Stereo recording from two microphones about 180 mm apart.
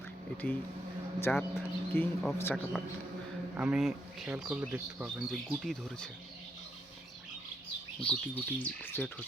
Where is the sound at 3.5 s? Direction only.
5° right (ahead or behind).